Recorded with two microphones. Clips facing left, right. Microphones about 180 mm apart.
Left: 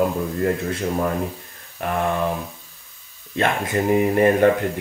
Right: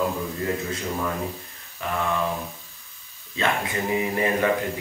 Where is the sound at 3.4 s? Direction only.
50° left (ahead or behind).